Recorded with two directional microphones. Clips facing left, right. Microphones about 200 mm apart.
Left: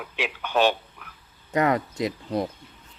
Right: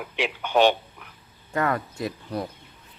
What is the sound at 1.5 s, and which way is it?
Speech, 20° left (ahead or behind).